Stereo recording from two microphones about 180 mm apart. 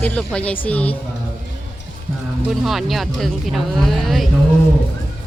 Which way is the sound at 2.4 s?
Centre (ahead or behind).